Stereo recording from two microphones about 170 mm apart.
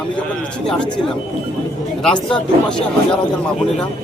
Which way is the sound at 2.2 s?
5° left (ahead or behind).